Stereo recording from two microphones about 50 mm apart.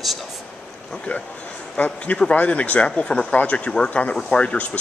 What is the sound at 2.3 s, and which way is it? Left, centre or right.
Speech, left.